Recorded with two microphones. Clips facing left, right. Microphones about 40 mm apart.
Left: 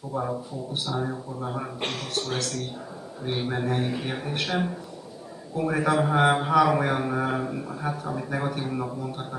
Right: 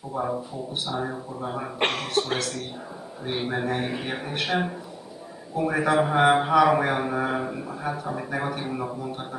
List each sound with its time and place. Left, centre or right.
0.1 s speech: centre
1.8 s speech: right
2.3 s speech: centre